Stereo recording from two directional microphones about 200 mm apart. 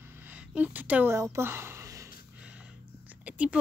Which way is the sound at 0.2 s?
5° right (ahead or behind).